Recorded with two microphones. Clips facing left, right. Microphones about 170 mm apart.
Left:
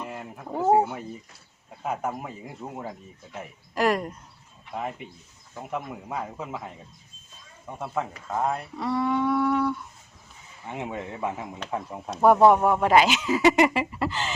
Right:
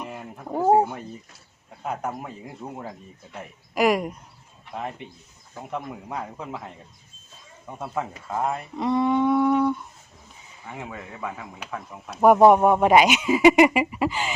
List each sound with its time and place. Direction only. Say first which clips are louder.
0.4 s a sound: right 3 dB; 10° right (ahead or behind)
1.8 s speech: even; 5° left (ahead or behind)
3.8 s speech: right 3 dB; 10° right (ahead or behind)
4.7 s speech: even; 5° left (ahead or behind)
8.7 s humming: right 7 dB; 20° right (ahead or behind)
10.7 s speech: left 4 dB; 25° left (ahead or behind)
12.1 s speech: right 2 dB; 15° right (ahead or behind)